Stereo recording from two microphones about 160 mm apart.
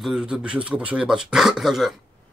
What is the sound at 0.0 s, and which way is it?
Speech, 5° right (ahead or behind).